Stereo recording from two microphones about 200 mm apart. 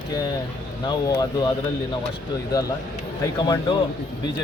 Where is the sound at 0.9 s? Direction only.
20° left (ahead or behind).